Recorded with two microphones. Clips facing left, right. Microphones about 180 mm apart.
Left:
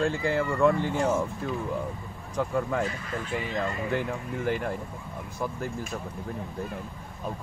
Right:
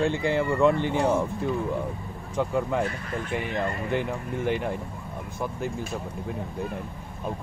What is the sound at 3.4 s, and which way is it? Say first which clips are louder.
Speech: right 2 dB; 60° right (ahead or behind).